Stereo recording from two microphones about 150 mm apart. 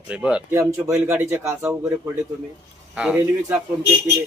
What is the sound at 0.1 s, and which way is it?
Speech, 5° right (ahead or behind).